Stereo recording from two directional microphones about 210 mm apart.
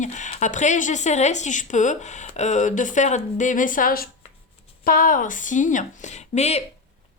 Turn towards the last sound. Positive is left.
turn(degrees=30)  # may be behind; listen again after turning